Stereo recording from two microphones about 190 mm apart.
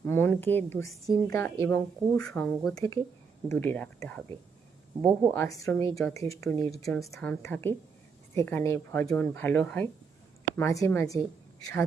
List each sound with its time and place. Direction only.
0.0 s speech: 10° left (ahead or behind)